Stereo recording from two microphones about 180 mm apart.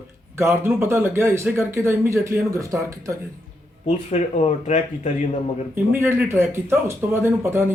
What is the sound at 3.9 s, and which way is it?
Speech, 40° left (ahead or behind).